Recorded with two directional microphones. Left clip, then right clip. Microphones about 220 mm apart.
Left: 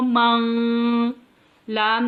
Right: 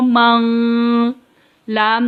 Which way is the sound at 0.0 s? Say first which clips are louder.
Right 6 dB; 45° right (ahead or behind).